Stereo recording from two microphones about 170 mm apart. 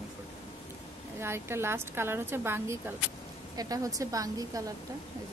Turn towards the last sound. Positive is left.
turn(degrees=-20)  # may be behind; listen again after turning